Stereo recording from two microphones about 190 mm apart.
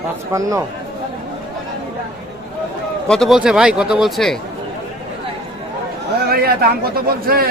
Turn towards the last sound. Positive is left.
turn(degrees=-50)  # may be behind; listen again after turning